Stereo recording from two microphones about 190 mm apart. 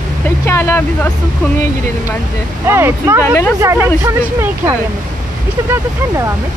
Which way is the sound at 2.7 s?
15° right (ahead or behind).